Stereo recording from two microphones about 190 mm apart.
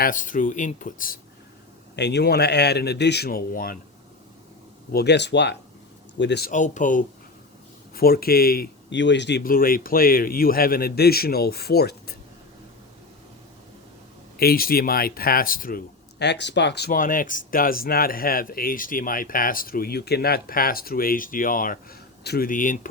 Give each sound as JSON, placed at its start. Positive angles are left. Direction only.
{"t": 0.0, "sound": "speech", "side_deg": 45}
{"t": 2.0, "sound": "speech", "side_deg": 60}
{"t": 4.9, "sound": "speech", "side_deg": 60}
{"t": 6.5, "sound": "speech", "side_deg": 40}
{"t": 14.3, "sound": "speech", "side_deg": 50}